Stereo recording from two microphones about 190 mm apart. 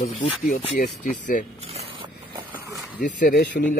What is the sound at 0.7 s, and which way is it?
Speech, 45° left (ahead or behind).